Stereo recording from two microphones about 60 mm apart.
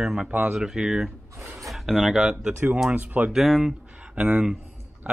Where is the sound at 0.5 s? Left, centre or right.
Centre.